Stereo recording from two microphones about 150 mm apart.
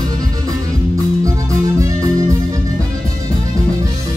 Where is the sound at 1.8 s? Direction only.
20° right (ahead or behind).